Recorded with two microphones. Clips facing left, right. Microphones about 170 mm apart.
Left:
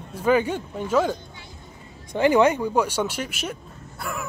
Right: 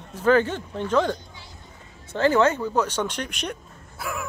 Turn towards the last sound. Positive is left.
turn(degrees=0)  # may be behind; listen again after turning